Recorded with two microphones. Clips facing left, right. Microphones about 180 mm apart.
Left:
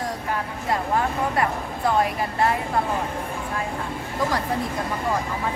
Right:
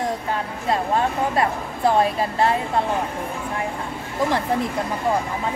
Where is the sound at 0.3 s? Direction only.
25° right (ahead or behind).